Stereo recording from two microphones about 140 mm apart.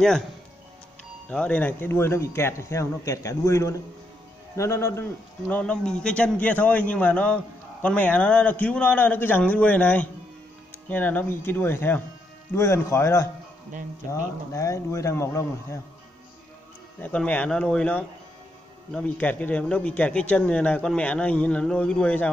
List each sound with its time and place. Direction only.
1.3 s a man's voice: 10° left (ahead or behind)
17.0 s speech: 10° left (ahead or behind)